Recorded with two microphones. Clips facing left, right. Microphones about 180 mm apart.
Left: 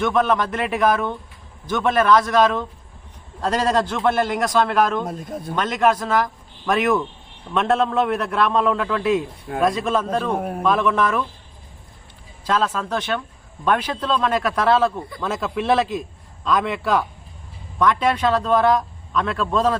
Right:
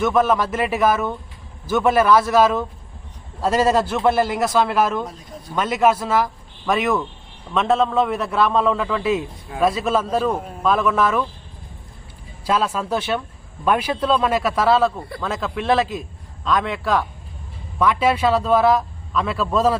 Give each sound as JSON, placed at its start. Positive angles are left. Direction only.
{"t": 0.0, "sound": "a man's voice", "side_deg": 0}
{"t": 5.0, "sound": "speech", "side_deg": 50}
{"t": 5.5, "sound": "a man's voice", "side_deg": -5}
{"t": 10.3, "sound": "a man's voice", "side_deg": 60}
{"t": 10.6, "sound": "a man's voice", "side_deg": 0}
{"t": 12.5, "sound": "a man's voice", "side_deg": -10}